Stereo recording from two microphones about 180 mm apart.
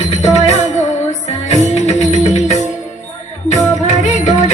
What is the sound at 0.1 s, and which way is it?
Music, 35° left (ahead or behind).